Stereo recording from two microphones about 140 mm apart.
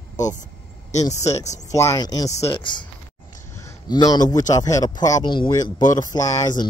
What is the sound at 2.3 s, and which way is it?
Speech, 45° left (ahead or behind).